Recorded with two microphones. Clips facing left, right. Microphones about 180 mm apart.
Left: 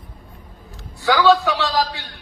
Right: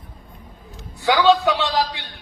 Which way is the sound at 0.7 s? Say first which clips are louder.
Even; 20° right (ahead or behind).